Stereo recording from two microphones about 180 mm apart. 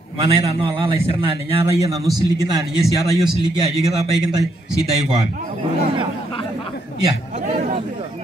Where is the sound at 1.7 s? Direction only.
20° right (ahead or behind).